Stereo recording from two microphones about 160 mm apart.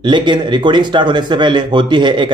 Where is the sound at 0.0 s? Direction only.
30° right (ahead or behind).